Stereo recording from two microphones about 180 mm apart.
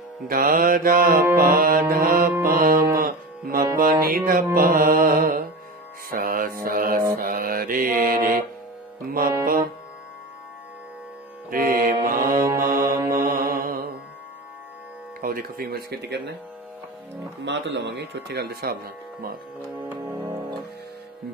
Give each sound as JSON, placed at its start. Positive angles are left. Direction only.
{"t": 0.3, "sound": "mantra", "side_deg": -55}
{"t": 3.0, "sound": "speech", "side_deg": -50}
{"t": 4.0, "sound": "mantra", "side_deg": -55}
{"t": 9.4, "sound": "music", "side_deg": -55}
{"t": 11.5, "sound": "mantra", "side_deg": -50}
{"t": 15.1, "sound": "speech", "side_deg": -50}
{"t": 17.5, "sound": "a man's voice", "side_deg": -75}